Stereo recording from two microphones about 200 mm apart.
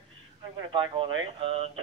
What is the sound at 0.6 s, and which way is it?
Speech, 25° right (ahead or behind).